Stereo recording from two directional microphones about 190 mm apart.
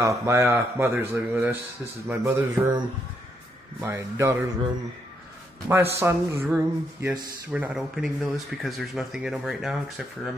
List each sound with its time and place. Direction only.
0.2 s speech: 15° right (ahead or behind)
3.8 s speech: 15° right (ahead or behind)
5.7 s speech: 15° right (ahead or behind)